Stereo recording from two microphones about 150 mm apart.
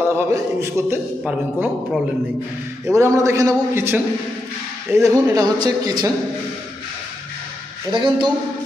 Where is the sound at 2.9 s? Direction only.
20° right (ahead or behind).